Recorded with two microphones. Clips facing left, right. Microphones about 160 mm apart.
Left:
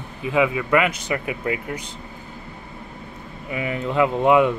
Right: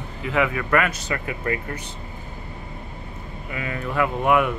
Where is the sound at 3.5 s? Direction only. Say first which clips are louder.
Left 4 dB; 20° left (ahead or behind).